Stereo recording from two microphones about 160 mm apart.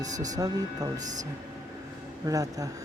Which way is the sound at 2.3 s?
20° right (ahead or behind).